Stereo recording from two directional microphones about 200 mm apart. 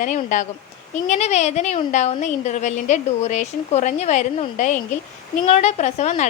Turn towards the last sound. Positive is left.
turn(degrees=35)  # may be behind; listen again after turning